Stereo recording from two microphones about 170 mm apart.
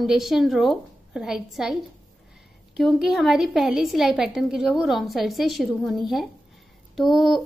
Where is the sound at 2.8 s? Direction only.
Centre (ahead or behind).